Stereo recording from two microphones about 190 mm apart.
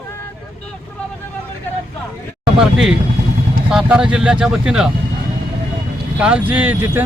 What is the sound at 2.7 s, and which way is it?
Speech, 5° right (ahead or behind).